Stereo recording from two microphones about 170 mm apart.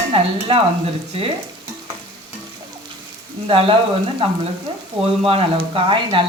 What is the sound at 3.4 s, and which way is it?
Speech, 30° right (ahead or behind).